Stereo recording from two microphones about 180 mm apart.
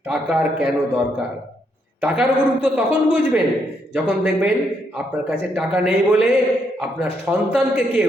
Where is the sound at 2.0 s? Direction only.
5° right (ahead or behind).